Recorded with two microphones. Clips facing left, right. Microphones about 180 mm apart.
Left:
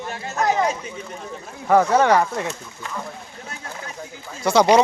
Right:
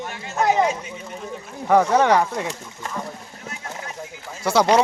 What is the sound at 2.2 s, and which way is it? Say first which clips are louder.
Speech: even; 10° right (ahead or behind).